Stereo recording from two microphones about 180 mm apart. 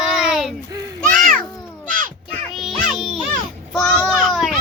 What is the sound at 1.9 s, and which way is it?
Crow, 50° right (ahead or behind).